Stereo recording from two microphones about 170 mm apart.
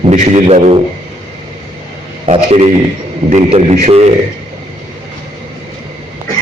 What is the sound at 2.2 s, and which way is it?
A man's voice, 40° right (ahead or behind).